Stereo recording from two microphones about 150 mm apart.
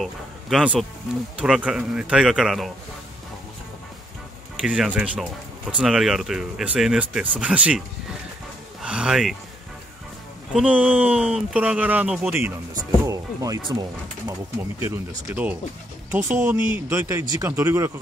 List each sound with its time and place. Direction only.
0.0 s speech: 5° right (ahead or behind)
4.6 s speech: 5° right (ahead or behind)
8.8 s speech: 5° right (ahead or behind)
10.5 s speech: 10° right (ahead or behind)